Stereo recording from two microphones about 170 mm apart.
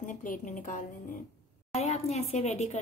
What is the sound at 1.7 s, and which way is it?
A woman's voice, 40° left (ahead or behind).